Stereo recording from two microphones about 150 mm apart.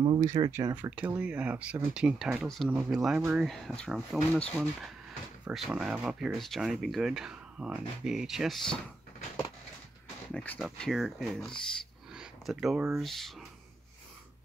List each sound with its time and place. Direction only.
0.0 s speech: 30° right (ahead or behind)
0.3 s speech: 20° right (ahead or behind); by 8.7 s centre (ahead or behind)
10.3 s speech: 10° left (ahead or behind)
10.6 s speech: centre (ahead or behind)